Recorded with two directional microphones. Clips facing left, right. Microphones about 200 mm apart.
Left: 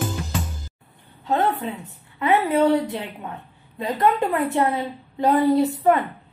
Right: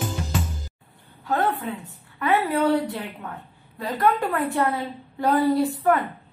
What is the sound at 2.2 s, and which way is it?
A woman's voice, 20° left (ahead or behind).